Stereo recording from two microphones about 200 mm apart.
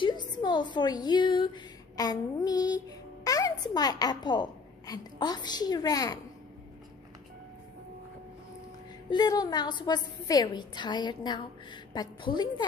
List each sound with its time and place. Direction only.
0.0 s a woman's voice: 20° left (ahead or behind)
9.1 s a woman's voice: 20° left (ahead or behind)